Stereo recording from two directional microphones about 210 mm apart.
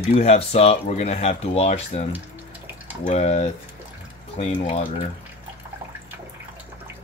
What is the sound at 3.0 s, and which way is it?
Speech, 35° left (ahead or behind).